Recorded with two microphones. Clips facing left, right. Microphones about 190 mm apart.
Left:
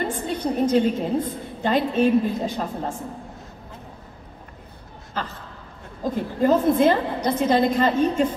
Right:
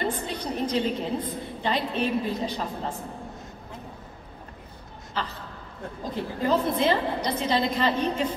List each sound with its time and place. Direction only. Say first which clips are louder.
0.1 s a woman's voice: left 6 dB; 50° left (ahead or behind)
5.2 s a sound: left 2 dB; 50° left (ahead or behind)
6.0 s a woman's voice: left 6 dB; 50° left (ahead or behind)